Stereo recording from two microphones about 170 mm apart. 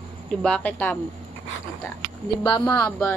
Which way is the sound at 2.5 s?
25° left (ahead or behind).